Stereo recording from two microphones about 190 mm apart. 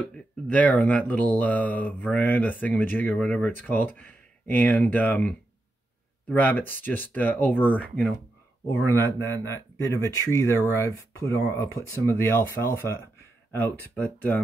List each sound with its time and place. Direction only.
0.0 s speech: 10° left (ahead or behind)